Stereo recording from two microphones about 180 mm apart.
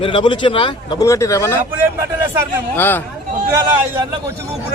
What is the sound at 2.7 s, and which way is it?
Speech, 10° left (ahead or behind).